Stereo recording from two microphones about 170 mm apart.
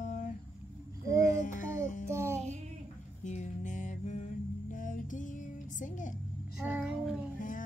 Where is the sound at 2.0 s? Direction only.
15° right (ahead or behind).